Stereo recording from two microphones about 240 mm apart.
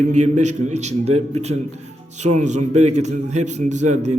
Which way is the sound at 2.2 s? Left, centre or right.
Right.